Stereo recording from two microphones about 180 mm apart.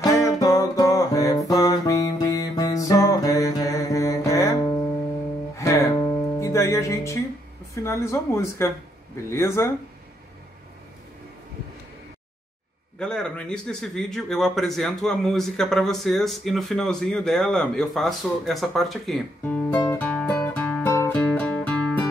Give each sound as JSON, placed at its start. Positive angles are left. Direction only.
{"t": 0.0, "sound": "music", "side_deg": 20}
{"t": 7.7, "sound": "speech", "side_deg": 15}
{"t": 13.0, "sound": "a man's voice", "side_deg": 5}
{"t": 20.9, "sound": "music", "side_deg": 15}